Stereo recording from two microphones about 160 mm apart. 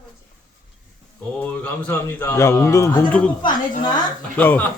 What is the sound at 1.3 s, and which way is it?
A man's voice, 10° left (ahead or behind).